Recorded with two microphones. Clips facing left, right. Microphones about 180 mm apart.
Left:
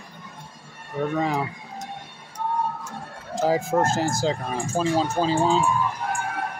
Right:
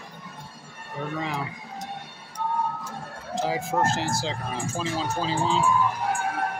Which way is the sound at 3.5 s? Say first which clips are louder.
Left 5 dB; 45° left (ahead or behind).